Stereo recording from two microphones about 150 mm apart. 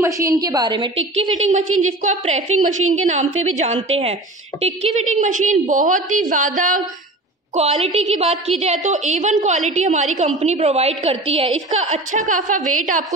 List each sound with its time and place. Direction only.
0.0 s a woman's voice: 20° right (ahead or behind); by 6.8 s 60° right (ahead or behind)
7.5 s a woman's voice: 45° right (ahead or behind)